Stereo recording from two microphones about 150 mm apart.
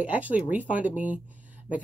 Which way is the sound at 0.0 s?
10° right (ahead or behind).